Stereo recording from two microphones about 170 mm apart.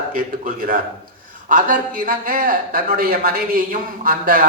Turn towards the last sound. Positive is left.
turn(degrees=-55)  # may be behind; listen again after turning